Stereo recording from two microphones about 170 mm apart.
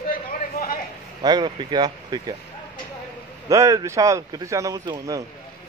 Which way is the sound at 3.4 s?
20° right (ahead or behind).